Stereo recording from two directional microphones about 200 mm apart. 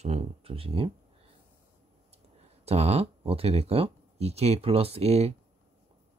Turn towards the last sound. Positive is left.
turn(degrees=-30)  # may be behind; listen again after turning